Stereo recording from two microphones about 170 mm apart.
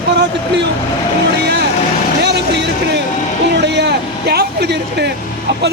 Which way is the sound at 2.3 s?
85° right.